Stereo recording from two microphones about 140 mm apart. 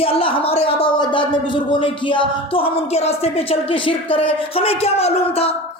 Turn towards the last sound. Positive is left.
turn(degrees=45)  # may be behind; listen again after turning